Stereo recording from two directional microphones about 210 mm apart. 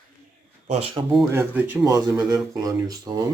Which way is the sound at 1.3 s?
10° right (ahead or behind).